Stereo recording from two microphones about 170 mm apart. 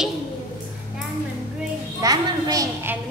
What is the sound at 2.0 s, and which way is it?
Speech, 20° right (ahead or behind).